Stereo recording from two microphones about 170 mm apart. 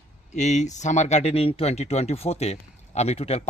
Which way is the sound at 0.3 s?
45° left (ahead or behind).